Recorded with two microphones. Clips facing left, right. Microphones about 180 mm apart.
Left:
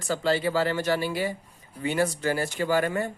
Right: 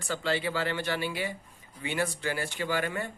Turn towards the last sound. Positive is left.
turn(degrees=40)  # may be behind; listen again after turning